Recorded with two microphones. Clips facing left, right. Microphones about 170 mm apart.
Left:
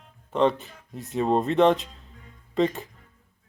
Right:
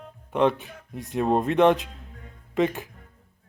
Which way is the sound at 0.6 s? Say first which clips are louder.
Right 3 dB; 60° right (ahead or behind).